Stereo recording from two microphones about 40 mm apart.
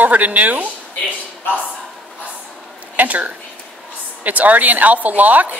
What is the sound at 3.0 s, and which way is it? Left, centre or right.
Speech, right.